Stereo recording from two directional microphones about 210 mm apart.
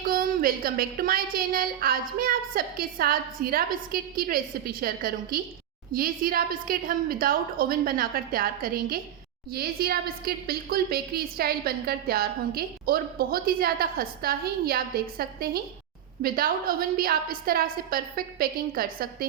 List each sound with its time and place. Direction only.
0.0 s a woman's voice: 40° right (ahead or behind)